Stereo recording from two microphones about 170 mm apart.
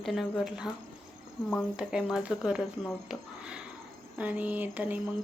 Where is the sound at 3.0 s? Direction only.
5° right (ahead or behind).